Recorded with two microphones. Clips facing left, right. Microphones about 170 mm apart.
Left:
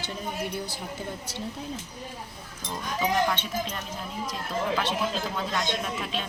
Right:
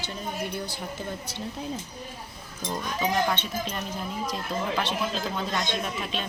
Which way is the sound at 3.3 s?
5° left (ahead or behind).